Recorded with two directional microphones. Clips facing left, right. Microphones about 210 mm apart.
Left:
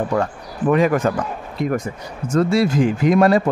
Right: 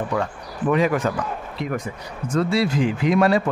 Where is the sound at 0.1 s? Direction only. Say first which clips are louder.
Left 4 dB; 45° left (ahead or behind).